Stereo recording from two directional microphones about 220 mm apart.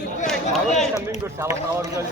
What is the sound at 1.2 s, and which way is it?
Speech, 10° right (ahead or behind).